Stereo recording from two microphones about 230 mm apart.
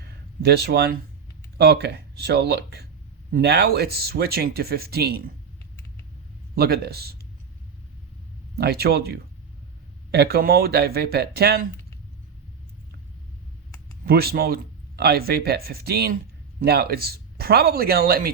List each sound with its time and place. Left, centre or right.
0.0 s a sound: right
1.5 s speech: right
6.6 s speech: right
8.5 s speech: right
14.0 s speech: right